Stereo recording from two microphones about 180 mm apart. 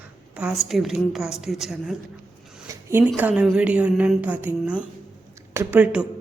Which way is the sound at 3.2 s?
10° right (ahead or behind).